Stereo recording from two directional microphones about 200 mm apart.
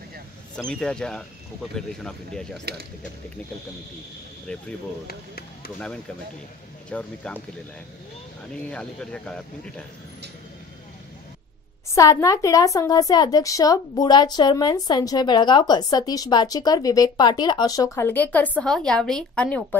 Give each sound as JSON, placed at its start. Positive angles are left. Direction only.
{"t": 0.7, "sound": "speech", "side_deg": 5}
{"t": 4.5, "sound": "speech", "side_deg": 5}
{"t": 6.9, "sound": "a woman's voice", "side_deg": 5}
{"t": 8.6, "sound": "speech", "side_deg": 5}
{"t": 11.9, "sound": "a woman's voice", "side_deg": 15}